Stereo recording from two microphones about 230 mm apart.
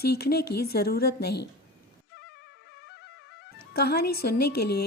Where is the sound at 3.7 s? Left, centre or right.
Left.